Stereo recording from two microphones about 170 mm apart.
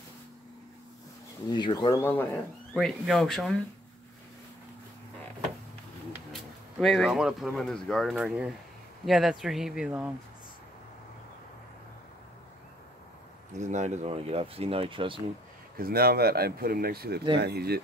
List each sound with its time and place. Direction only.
1.5 s speech: 25° left (ahead or behind)
2.0 s speech: 10° left (ahead or behind)
2.7 s speech: centre (ahead or behind)
6.3 s speech: centre (ahead or behind)
13.6 s speech: 45° right (ahead or behind)
15.8 s speech: 65° right (ahead or behind)